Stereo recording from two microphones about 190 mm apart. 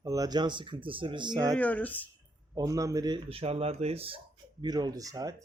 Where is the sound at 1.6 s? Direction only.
10° left (ahead or behind).